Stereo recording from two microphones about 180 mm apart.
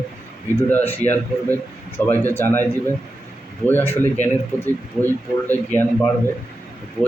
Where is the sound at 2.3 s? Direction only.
10° left (ahead or behind).